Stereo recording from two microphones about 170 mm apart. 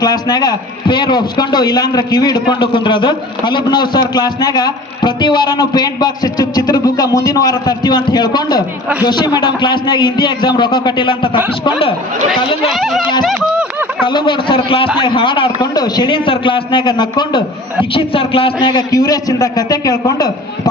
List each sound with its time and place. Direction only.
0.0 s a man's voice: 25° left (ahead or behind)
12.6 s speech: centre (ahead or behind)
13.2 s a sound: 5° right (ahead or behind)
14.1 s a man's voice: 30° left (ahead or behind)